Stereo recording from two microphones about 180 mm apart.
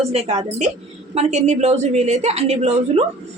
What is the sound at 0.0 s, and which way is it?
A woman's voice, 35° right (ahead or behind).